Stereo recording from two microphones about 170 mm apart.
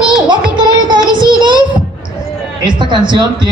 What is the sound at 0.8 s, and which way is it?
Child singing, 25° right (ahead or behind).